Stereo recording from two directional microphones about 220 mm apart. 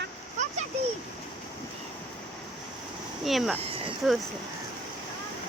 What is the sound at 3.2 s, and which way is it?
Speech, centre (ahead or behind).